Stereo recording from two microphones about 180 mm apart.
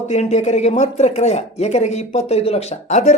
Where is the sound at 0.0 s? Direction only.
40° left (ahead or behind).